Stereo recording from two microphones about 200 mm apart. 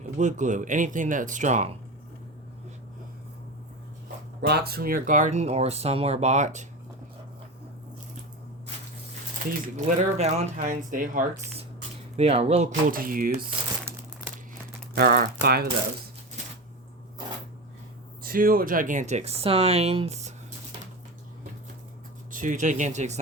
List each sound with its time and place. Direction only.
0.2 s speech: 40° right (ahead or behind)
4.4 s speech: 55° right (ahead or behind); by 6.7 s 35° right (ahead or behind)
9.5 s speech: 35° right (ahead or behind)
12.9 s speech: 45° right (ahead or behind)
13.7 s crumpling: 10° right (ahead or behind)
14.9 s speech: 50° right (ahead or behind)
18.2 s speech: 45° right (ahead or behind)
22.3 s speech: 40° right (ahead or behind)